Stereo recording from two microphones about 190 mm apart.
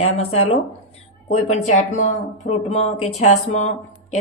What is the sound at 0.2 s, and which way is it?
Speech, 35° left (ahead or behind).